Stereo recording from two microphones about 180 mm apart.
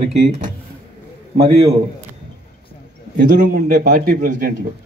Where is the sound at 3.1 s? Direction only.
55° right (ahead or behind).